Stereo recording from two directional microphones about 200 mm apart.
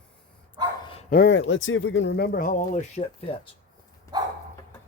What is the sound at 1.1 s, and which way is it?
Speech, 55° left (ahead or behind).